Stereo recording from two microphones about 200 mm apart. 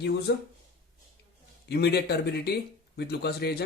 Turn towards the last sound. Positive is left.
turn(degrees=55)  # may be behind; listen again after turning